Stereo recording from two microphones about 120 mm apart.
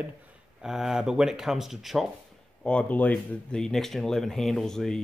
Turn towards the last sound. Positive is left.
turn(degrees=5)  # may be behind; listen again after turning